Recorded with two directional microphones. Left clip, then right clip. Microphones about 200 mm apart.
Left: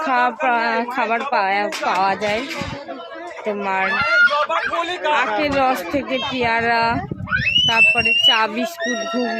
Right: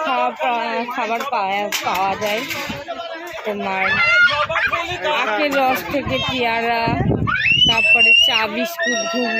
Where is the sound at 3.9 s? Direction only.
45° right (ahead or behind).